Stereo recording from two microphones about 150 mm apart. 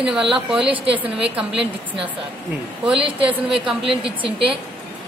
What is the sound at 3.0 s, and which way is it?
A woman's voice, 35° right (ahead or behind).